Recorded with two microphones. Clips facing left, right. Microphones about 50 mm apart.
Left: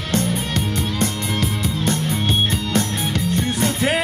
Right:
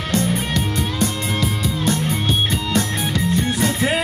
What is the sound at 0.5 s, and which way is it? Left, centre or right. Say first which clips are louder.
Music: right 1 dB; left.